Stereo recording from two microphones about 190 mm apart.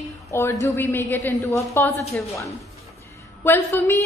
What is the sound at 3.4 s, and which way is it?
Speech, 10° left (ahead or behind).